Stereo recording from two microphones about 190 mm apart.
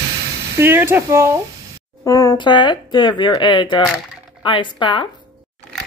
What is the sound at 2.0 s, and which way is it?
Speech, 15° left (ahead or behind).